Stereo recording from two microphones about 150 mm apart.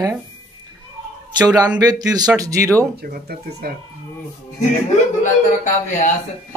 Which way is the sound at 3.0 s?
90° right.